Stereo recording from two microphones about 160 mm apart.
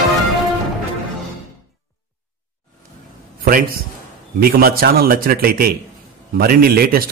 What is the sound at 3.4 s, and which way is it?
A man's voice, 65° right (ahead or behind).